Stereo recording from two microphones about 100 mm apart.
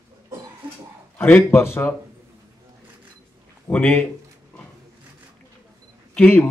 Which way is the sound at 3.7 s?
20° left (ahead or behind).